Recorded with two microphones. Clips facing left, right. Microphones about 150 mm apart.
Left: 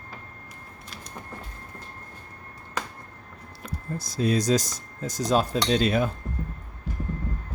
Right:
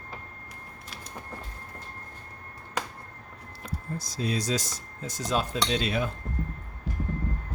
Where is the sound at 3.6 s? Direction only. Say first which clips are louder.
Left 2 dB; 55° left (ahead or behind).